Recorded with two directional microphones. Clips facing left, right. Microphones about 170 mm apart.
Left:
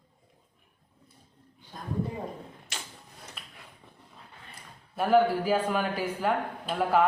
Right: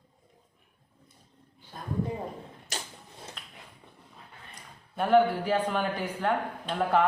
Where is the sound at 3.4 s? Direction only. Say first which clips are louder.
Even; 5° left (ahead or behind).